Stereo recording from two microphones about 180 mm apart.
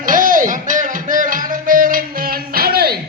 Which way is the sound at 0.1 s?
50° right (ahead or behind).